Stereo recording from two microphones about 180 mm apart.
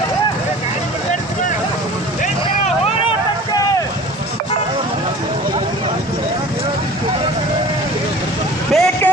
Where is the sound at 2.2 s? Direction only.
35° left (ahead or behind).